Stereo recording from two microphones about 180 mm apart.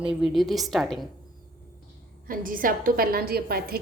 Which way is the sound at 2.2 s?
50° right (ahead or behind).